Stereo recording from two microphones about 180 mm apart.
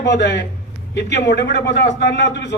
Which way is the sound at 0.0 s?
75° left (ahead or behind).